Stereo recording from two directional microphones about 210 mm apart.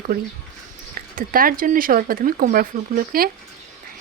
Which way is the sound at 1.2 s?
40° right (ahead or behind).